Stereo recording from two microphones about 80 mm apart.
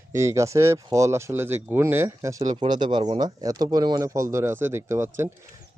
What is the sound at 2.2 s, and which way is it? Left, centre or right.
Speech, right.